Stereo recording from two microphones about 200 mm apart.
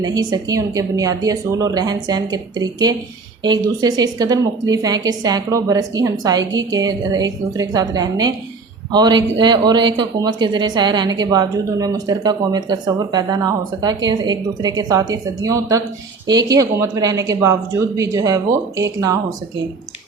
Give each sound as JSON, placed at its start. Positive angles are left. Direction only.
{"t": 0.0, "sound": "speech", "side_deg": -20}